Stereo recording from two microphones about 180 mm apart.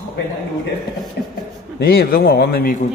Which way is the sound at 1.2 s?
70° left (ahead or behind).